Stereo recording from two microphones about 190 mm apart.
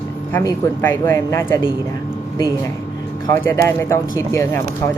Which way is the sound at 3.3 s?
15° left (ahead or behind).